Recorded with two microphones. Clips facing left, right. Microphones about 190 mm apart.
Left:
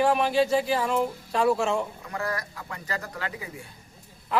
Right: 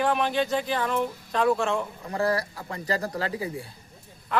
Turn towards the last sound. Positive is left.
turn(degrees=-35)  # may be behind; listen again after turning